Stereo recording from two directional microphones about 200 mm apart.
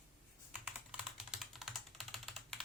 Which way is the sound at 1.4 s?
Centre (ahead or behind).